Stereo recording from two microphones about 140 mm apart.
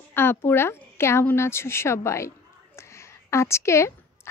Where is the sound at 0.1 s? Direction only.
15° left (ahead or behind).